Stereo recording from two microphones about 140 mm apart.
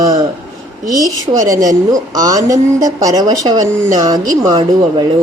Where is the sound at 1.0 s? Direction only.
25° right (ahead or behind).